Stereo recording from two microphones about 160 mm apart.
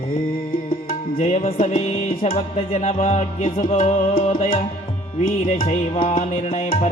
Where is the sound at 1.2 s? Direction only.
45° left (ahead or behind).